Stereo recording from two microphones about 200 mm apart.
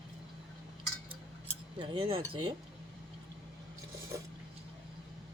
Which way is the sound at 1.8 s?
25° right (ahead or behind).